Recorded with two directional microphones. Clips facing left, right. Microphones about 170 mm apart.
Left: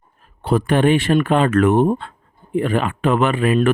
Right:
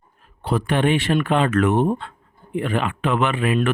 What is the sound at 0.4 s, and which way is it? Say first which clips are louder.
Speech: left 4 dB; 45° left (ahead or behind).